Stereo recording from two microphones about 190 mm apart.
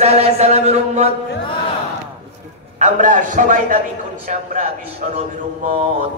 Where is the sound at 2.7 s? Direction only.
40° right (ahead or behind).